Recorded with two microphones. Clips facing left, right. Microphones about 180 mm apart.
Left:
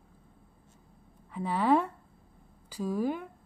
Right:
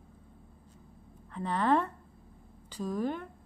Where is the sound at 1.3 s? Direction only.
10° left (ahead or behind).